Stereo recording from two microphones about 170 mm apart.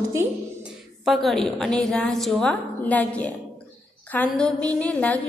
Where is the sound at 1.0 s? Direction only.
Centre (ahead or behind).